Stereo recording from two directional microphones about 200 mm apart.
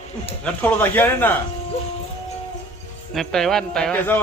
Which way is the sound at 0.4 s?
10° left (ahead or behind).